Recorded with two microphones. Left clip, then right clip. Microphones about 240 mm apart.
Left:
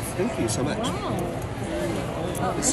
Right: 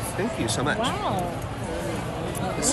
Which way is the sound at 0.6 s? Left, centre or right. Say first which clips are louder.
Right 3 dB; centre.